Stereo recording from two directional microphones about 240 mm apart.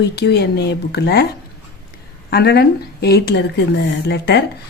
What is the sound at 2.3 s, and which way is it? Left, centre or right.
A woman's voice, left.